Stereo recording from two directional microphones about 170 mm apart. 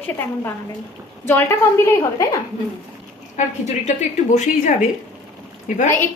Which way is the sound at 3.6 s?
45° left (ahead or behind).